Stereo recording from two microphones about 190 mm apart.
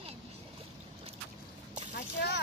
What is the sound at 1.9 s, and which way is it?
Speech, 60° left (ahead or behind).